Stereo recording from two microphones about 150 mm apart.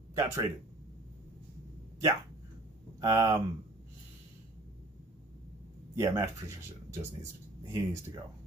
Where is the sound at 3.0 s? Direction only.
25° right (ahead or behind).